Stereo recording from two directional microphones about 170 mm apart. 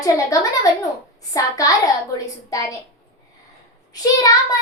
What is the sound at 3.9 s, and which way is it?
Speech, 20° left (ahead or behind).